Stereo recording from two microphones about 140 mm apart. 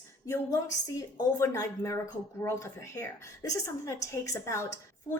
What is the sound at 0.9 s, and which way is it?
A woman's voice, 20° left (ahead or behind).